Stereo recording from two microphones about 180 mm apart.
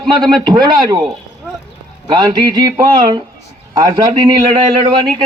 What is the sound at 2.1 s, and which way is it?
A man's voice, 25° right (ahead or behind).